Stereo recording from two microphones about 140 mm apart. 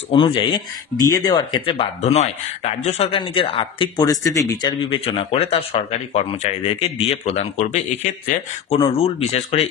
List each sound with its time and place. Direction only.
0.1 s speech: 40° left (ahead or behind)
3.2 s speech: 35° left (ahead or behind)
4.8 s speech: 40° left (ahead or behind); by 8.7 s 60° left (ahead or behind)
8.9 s speech: 45° left (ahead or behind)